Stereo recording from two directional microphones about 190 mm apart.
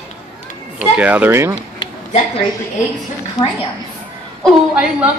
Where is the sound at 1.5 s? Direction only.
30° left (ahead or behind).